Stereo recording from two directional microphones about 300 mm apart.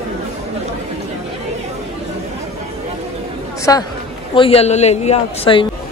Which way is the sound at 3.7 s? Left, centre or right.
Centre.